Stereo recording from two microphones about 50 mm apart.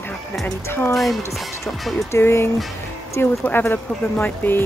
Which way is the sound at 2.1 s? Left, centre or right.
Left.